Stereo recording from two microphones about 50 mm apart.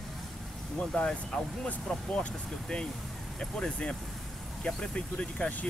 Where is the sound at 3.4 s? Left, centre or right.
Centre.